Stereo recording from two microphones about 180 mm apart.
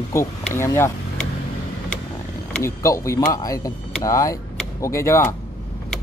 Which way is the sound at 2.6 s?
15° left (ahead or behind).